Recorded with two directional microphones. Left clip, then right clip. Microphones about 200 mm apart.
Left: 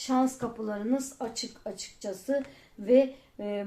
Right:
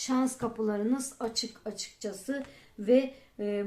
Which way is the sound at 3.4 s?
30° right (ahead or behind).